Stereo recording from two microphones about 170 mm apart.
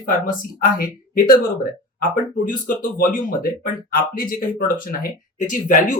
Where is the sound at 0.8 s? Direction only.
60° left (ahead or behind).